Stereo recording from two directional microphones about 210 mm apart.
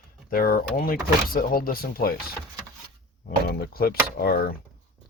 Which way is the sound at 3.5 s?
45° left (ahead or behind).